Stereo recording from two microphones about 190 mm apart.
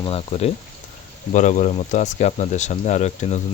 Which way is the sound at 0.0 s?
30° left (ahead or behind).